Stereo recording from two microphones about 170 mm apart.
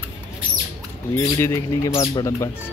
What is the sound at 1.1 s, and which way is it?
Speech, 15° left (ahead or behind).